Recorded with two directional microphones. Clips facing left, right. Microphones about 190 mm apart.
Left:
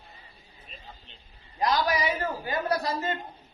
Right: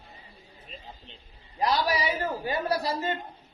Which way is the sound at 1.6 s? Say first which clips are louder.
Even; 30° right (ahead or behind).